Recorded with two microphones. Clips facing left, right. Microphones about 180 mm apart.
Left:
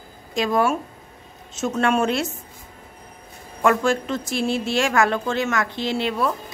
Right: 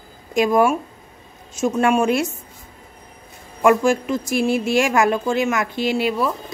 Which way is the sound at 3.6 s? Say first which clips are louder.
Right 4 dB; 15° right (ahead or behind).